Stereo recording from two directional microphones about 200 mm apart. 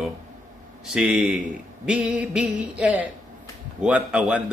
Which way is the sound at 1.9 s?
5° right (ahead or behind).